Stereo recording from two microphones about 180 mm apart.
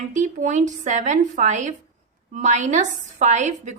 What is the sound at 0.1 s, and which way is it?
A woman's voice, 45° right (ahead or behind).